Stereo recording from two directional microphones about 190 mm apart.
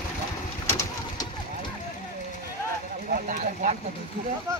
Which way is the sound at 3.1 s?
45° right (ahead or behind).